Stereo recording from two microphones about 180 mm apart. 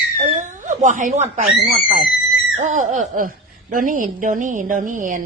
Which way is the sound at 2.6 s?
40° right (ahead or behind).